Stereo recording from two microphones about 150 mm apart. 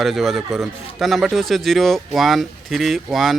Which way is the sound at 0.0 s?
Centre (ahead or behind).